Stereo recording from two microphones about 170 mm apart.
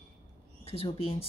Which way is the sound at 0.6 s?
35° left (ahead or behind).